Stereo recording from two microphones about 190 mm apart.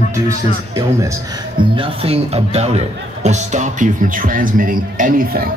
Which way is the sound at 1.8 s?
30° right (ahead or behind).